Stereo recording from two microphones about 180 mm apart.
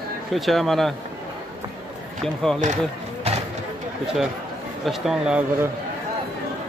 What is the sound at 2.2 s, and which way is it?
Speech, centre (ahead or behind).